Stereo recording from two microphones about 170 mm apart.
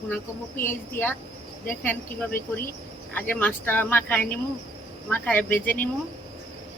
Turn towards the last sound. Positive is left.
turn(degrees=10)  # may be behind; listen again after turning